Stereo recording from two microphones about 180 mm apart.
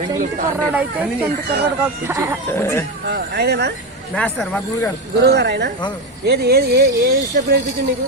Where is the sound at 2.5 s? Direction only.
15° left (ahead or behind).